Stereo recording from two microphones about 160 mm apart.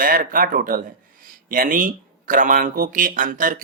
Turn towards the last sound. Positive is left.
turn(degrees=-55)  # may be behind; listen again after turning